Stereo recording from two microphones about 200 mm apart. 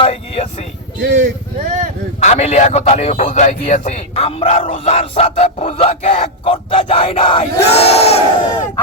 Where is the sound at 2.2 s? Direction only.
30° left (ahead or behind).